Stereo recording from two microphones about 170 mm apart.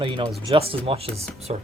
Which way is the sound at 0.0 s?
30° right (ahead or behind).